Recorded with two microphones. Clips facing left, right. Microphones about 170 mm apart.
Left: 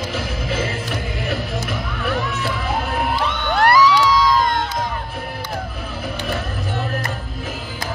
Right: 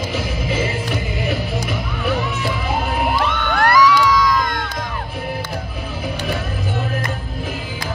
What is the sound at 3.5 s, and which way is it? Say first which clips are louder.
Crowd: even; 30° left (ahead or behind).